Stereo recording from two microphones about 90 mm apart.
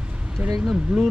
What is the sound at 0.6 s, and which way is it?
Speech, 5° right (ahead or behind).